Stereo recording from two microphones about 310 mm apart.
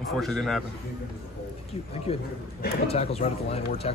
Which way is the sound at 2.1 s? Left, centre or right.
Centre.